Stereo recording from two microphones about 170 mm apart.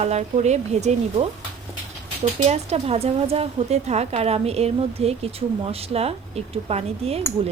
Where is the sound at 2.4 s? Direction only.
40° right (ahead or behind).